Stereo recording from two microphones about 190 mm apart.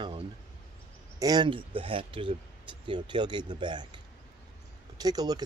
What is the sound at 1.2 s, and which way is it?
Speech, 20° right (ahead or behind).